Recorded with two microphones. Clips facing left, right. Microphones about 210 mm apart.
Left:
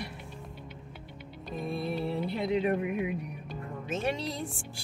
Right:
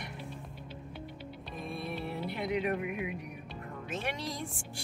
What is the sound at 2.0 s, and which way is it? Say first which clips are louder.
Speech: left 5 dB; 25° left (ahead or behind).